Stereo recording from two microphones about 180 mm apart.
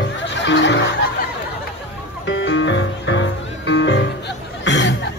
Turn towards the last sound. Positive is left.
turn(degrees=85)